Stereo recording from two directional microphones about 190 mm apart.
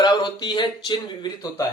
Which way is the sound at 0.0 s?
20° left (ahead or behind).